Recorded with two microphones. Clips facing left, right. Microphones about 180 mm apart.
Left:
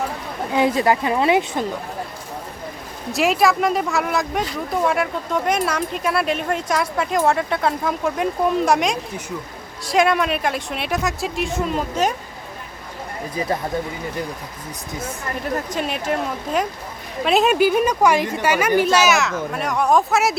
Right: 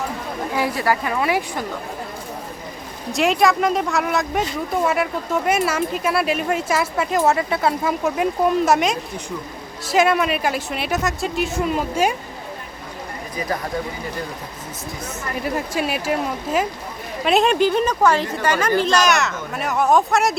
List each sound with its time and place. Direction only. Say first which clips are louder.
0.5 s a woman's voice: left 4 dB; 20° left (ahead or behind)
3.1 s speech: even; centre (ahead or behind)
15.4 s speech: right 1 dB; 5° right (ahead or behind)